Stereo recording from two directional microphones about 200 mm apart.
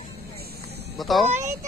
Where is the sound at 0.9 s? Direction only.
Centre (ahead or behind).